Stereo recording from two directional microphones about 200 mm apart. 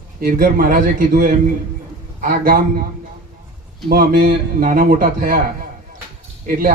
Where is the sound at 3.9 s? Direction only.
45° right (ahead or behind).